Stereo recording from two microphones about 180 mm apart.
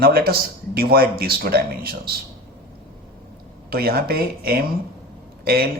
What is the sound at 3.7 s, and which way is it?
Speech, 55° right (ahead or behind).